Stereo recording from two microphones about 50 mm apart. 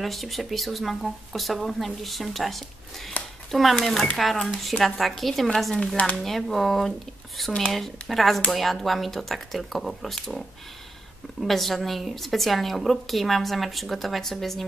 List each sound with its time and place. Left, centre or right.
0.0 s speech: centre
11.4 s speech: centre